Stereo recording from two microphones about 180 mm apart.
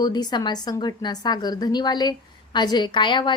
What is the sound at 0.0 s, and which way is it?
A woman's voice, 25° left (ahead or behind).